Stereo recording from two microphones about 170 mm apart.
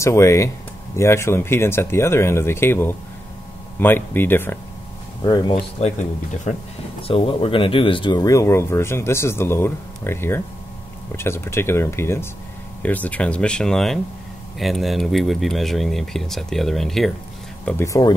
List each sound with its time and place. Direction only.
0.0 s speech: 15° left (ahead or behind)
5.2 s speech: 25° left (ahead or behind)
5.8 s speech: 40° left (ahead or behind); by 17.1 s centre (ahead or behind)
17.6 s speech: 15° left (ahead or behind)